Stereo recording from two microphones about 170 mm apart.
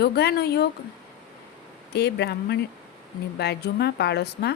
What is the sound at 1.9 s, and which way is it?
A woman's voice, 75° left (ahead or behind).